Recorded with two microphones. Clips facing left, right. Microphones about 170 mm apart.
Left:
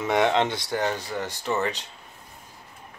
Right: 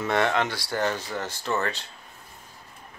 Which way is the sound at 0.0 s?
15° left (ahead or behind).